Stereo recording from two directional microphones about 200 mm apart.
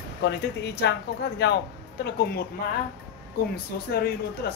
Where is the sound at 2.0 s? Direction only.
55° left (ahead or behind).